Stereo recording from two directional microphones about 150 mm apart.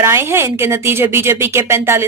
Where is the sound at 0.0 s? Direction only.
15° right (ahead or behind).